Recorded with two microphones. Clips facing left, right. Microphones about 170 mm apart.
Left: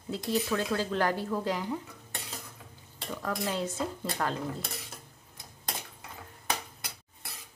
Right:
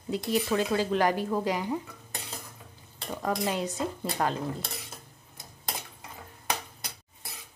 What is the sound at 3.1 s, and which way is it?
Speech, 20° right (ahead or behind).